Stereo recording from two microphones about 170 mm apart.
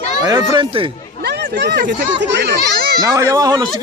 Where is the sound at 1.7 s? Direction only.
65° right (ahead or behind).